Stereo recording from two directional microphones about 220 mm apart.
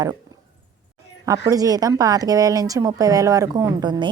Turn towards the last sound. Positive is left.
turn(degrees=-20)  # may be behind; listen again after turning